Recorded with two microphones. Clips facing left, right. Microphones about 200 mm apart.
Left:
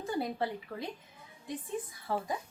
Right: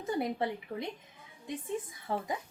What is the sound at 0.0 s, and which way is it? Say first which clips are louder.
Speech: right 1 dB; 20° right (ahead or behind).